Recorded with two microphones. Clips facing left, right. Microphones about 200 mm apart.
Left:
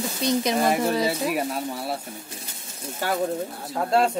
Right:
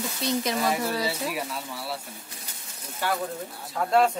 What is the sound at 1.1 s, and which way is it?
Speech, 50° left (ahead or behind).